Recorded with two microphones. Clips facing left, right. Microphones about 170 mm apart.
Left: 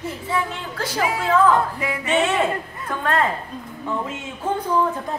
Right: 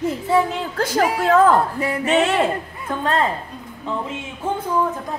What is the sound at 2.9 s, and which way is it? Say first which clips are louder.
Speech: right 1 dB; 20° right (ahead or behind).